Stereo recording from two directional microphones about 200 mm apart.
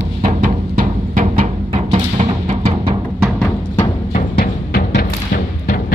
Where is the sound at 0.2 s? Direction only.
40° right (ahead or behind).